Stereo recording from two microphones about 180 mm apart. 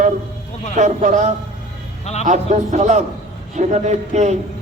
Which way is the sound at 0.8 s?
40° right (ahead or behind).